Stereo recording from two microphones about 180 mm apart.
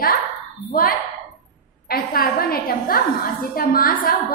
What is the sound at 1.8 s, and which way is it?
A woman's voice, 55° left (ahead or behind).